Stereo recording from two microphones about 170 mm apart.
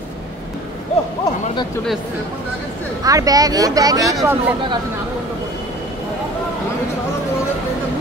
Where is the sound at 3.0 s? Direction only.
20° right (ahead or behind).